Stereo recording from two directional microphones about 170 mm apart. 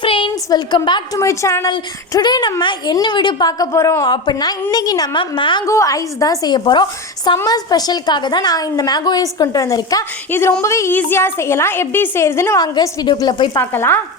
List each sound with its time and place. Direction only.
0.0 s a woman's voice: 30° left (ahead or behind); by 14.0 s 15° left (ahead or behind)